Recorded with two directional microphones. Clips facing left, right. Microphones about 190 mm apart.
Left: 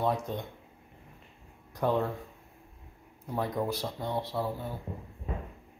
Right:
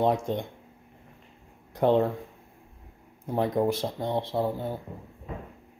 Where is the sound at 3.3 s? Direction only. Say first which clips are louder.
Right 6 dB; 25° right (ahead or behind).